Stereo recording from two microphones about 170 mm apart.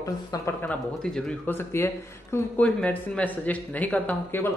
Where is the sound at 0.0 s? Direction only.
20° left (ahead or behind).